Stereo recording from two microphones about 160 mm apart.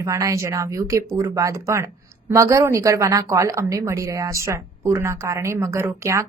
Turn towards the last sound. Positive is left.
turn(degrees=-15)  # may be behind; listen again after turning